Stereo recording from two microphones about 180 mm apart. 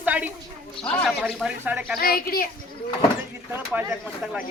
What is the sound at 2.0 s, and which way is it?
Speech, 55° left (ahead or behind).